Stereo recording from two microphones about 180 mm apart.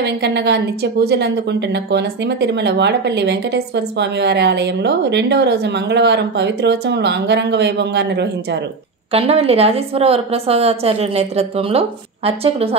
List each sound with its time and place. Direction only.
0.0 s a woman's voice: 70° right (ahead or behind)
9.1 s a woman's voice: 35° right (ahead or behind)